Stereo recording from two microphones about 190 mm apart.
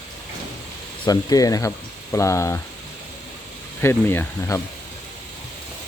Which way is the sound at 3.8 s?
10° left (ahead or behind).